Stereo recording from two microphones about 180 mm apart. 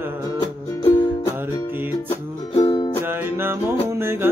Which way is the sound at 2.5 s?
30° left (ahead or behind).